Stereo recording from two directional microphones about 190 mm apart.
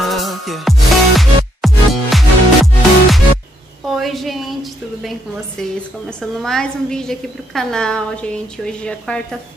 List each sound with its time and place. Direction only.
0.0 s music: centre (ahead or behind)
3.8 s a sound: centre (ahead or behind)
5.6 s a woman's voice: 5° left (ahead or behind)